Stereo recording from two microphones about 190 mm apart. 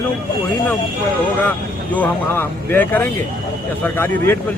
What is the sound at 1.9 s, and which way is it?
Speech, 10° left (ahead or behind).